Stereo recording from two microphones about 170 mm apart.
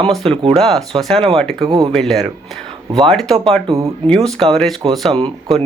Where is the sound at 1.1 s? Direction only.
30° right (ahead or behind).